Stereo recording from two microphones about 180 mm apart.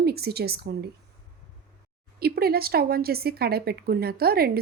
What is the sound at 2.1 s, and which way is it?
Speech, 60° right (ahead or behind).